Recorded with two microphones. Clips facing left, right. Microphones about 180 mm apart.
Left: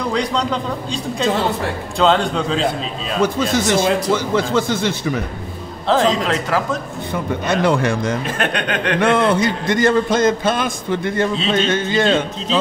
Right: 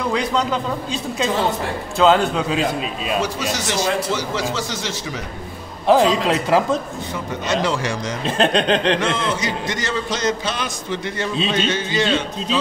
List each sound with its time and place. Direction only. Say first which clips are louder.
0.1 s a man's voice: left 1 dB; 5° right (ahead or behind)
3.2 s a man's voice: left 9 dB; 55° left (ahead or behind)
5.9 s a man's voice: right 1 dB; 15° right (ahead or behind)
7.4 s speech: left 4 dB; 55° left (ahead or behind)
8.3 s speech: right 4 dB; 25° right (ahead or behind)
9.0 s a man's voice: left 7 dB; 60° left (ahead or behind)